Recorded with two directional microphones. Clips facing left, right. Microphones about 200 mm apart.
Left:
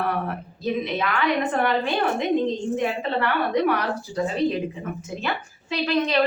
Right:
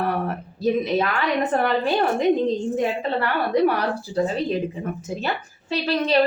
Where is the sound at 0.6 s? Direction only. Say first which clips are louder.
Right 5 dB; 40° right (ahead or behind).